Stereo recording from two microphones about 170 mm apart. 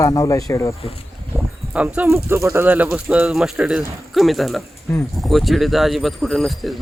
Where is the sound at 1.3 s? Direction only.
5° right (ahead or behind).